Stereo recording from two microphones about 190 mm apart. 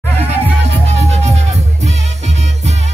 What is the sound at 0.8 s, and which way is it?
Music, 35° right (ahead or behind).